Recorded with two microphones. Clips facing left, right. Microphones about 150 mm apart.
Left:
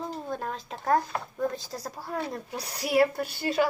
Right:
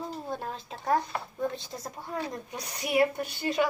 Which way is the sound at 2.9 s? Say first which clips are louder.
Left 2 dB; 5° left (ahead or behind).